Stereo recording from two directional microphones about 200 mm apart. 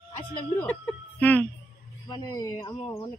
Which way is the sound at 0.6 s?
5° left (ahead or behind).